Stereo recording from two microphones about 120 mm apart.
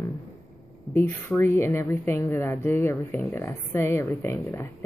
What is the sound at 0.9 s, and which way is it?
Speech, 20° left (ahead or behind).